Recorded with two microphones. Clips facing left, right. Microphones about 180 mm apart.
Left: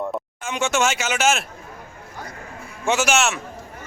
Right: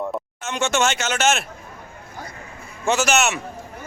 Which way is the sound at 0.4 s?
10° left (ahead or behind).